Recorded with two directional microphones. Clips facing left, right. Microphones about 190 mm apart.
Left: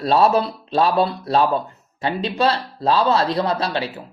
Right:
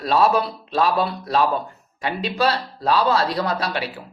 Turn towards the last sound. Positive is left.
turn(degrees=25)  # may be behind; listen again after turning